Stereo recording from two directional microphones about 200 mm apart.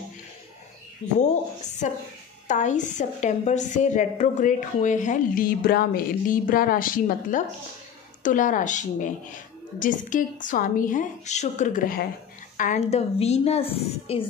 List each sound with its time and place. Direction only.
2.4 s a woman's voice: 40° left (ahead or behind)